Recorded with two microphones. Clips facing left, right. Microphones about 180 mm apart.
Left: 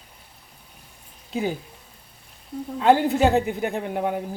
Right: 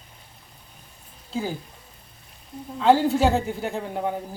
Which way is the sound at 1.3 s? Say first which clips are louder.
Left 3 dB; 20° left (ahead or behind).